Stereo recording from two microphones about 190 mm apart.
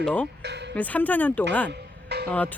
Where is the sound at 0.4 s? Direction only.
65° right (ahead or behind).